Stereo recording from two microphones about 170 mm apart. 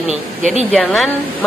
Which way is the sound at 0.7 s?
Centre (ahead or behind).